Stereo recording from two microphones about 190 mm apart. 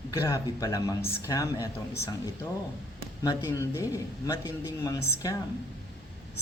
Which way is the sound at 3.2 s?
15° left (ahead or behind).